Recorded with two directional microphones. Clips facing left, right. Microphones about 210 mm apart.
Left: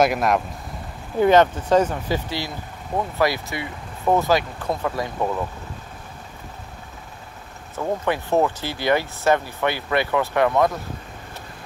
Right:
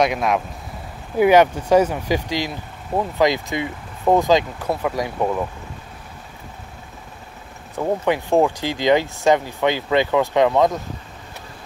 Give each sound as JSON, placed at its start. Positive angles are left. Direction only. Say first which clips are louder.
{"t": 0.0, "sound": "speech", "louder": "even", "side_deg": 0}
{"t": 1.1, "sound": "speech", "louder": "right 2 dB", "side_deg": -10}
{"t": 7.7, "sound": "speech", "louder": "right 3 dB", "side_deg": -15}